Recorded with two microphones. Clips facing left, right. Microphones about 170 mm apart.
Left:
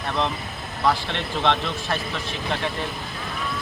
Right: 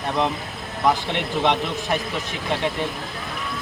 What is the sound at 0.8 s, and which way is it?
Speech, 15° right (ahead or behind).